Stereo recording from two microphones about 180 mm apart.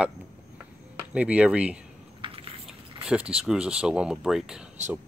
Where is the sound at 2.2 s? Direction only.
30° right (ahead or behind).